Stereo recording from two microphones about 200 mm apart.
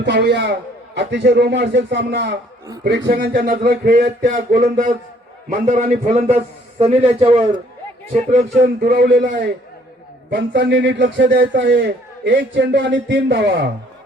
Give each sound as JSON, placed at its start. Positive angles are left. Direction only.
{"t": 0.0, "sound": "a man's voice", "side_deg": -55}
{"t": 8.6, "sound": "a man's voice", "side_deg": -50}